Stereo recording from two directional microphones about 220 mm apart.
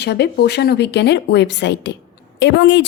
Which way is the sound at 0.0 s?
50° left (ahead or behind).